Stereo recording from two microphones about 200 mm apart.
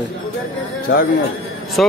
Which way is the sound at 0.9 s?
70° left (ahead or behind).